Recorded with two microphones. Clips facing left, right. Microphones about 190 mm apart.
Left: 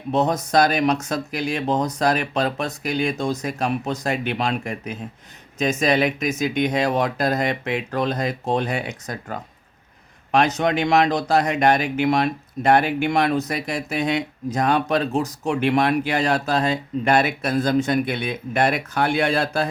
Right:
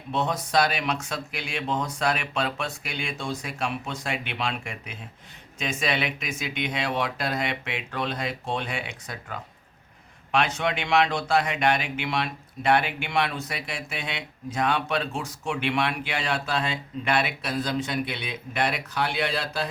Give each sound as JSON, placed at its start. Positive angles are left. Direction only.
{"t": 0.1, "sound": "speech", "side_deg": 40}